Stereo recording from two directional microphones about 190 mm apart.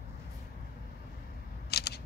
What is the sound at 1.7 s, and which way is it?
Scissors, 60° left (ahead or behind).